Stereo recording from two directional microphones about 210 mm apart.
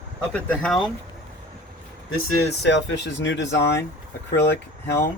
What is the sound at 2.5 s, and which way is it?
Speech, 55° left (ahead or behind).